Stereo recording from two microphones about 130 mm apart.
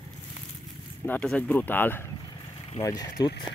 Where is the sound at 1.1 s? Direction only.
10° left (ahead or behind).